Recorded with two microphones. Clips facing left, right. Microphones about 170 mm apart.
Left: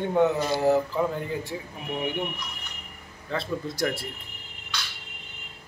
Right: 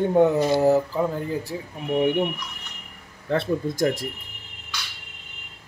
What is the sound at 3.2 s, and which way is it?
Speech, 55° right (ahead or behind).